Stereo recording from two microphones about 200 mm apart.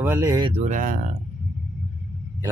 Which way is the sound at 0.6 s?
40° right (ahead or behind).